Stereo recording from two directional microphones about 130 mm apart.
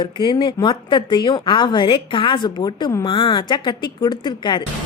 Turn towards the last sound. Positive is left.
turn(degrees=35)  # may be behind; listen again after turning